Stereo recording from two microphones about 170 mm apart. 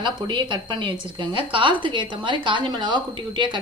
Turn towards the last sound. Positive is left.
turn(degrees=-30)  # may be behind; listen again after turning